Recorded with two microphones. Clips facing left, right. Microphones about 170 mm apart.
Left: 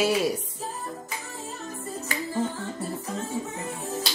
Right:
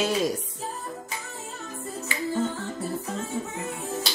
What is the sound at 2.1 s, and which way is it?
Music, 45° left (ahead or behind).